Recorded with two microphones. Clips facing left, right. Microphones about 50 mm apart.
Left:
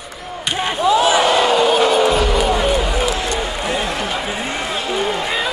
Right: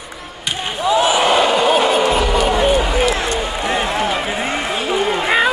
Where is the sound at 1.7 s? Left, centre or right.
Centre.